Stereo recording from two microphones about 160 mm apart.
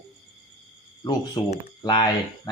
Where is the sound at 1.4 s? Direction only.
35° left (ahead or behind).